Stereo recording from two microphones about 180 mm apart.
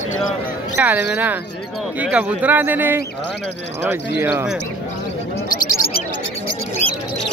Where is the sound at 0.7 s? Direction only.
10° right (ahead or behind).